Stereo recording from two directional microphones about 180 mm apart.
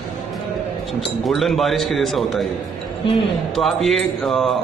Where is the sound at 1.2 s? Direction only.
Centre (ahead or behind).